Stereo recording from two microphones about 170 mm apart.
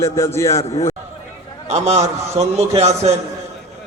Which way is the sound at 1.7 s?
40° right (ahead or behind).